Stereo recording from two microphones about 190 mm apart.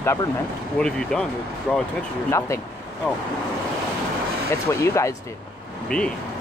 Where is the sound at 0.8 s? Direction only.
5° left (ahead or behind).